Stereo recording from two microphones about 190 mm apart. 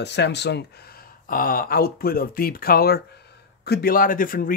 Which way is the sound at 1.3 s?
50° left (ahead or behind).